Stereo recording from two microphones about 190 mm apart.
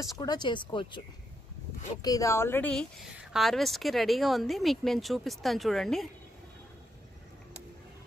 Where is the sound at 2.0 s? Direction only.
15° left (ahead or behind); by 6.0 s centre (ahead or behind).